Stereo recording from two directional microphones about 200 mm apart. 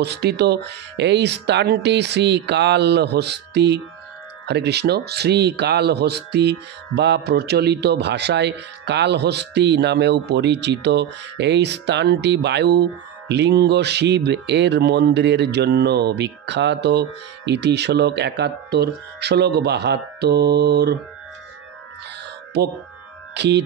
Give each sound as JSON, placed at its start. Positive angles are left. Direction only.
{"t": 0.0, "sound": "a man's voice", "side_deg": -55}
{"t": 23.3, "sound": "speech", "side_deg": -60}